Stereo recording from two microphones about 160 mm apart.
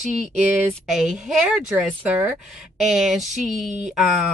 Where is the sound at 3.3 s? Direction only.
50° right (ahead or behind).